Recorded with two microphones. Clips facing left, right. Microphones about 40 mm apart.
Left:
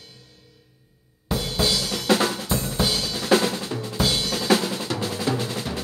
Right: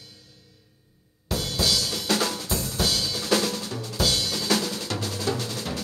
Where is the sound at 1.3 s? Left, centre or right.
Left.